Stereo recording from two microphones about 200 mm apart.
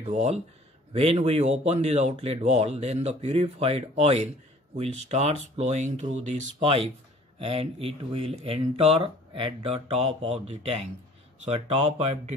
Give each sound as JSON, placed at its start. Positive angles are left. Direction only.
{"t": 0.0, "sound": "speech", "side_deg": -35}